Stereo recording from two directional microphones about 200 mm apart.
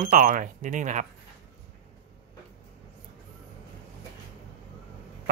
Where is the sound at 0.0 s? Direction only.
40° right (ahead or behind).